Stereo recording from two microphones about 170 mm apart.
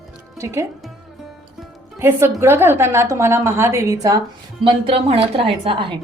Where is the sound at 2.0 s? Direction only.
15° right (ahead or behind).